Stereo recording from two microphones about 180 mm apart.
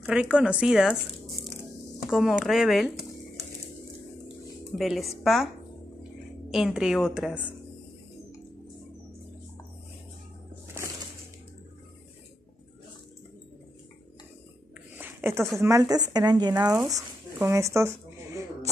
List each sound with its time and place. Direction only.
0.0 s speech: 5° right (ahead or behind)
2.0 s speech: centre (ahead or behind)
4.7 s speech: centre (ahead or behind)
6.5 s speech: 5° right (ahead or behind)
15.0 s a sound: 10° right (ahead or behind)
15.6 s speech: 20° right (ahead or behind)
17.5 s a sound: 15° right (ahead or behind)